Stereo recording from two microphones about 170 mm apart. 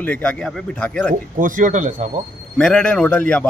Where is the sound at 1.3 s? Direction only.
50° right (ahead or behind).